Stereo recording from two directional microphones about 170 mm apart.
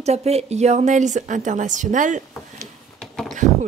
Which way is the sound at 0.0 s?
40° right (ahead or behind).